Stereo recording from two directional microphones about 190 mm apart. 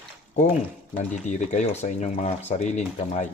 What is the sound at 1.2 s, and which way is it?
Speech, 35° left (ahead or behind).